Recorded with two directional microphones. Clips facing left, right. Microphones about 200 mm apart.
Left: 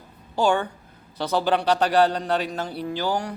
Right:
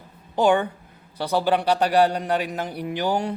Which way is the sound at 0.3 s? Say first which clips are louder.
Right 2 dB; 20° right (ahead or behind).